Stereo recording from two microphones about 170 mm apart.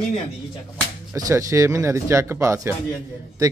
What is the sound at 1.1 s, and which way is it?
Speech, 20° right (ahead or behind).